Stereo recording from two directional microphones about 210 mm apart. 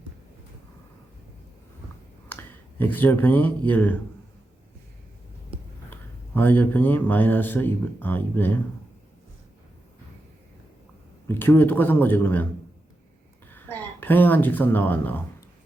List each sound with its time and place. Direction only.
2.3 s a sound: 10° left (ahead or behind)
3.7 s a man's voice: 10° left (ahead or behind)
5.9 s a man's voice: 10° left (ahead or behind)
11.3 s a man's voice: 10° left (ahead or behind)
13.5 s speech: 10° left (ahead or behind)